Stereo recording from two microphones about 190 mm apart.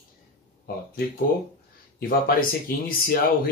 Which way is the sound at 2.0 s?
50° left (ahead or behind).